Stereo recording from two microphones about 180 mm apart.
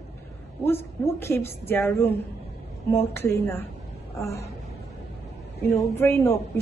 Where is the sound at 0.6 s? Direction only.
15° left (ahead or behind).